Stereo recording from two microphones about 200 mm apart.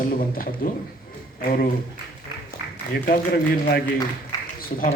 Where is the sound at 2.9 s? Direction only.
45° left (ahead or behind).